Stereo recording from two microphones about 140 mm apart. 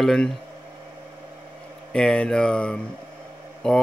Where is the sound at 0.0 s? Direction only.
5° left (ahead or behind).